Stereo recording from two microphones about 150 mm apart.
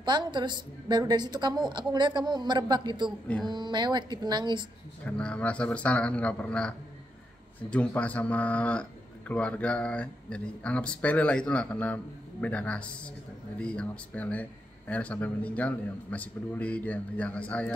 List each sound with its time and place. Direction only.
0.0 s a woman's voice: 30° right (ahead or behind)
5.0 s speech: 5° left (ahead or behind)
7.7 s speech: 10° left (ahead or behind)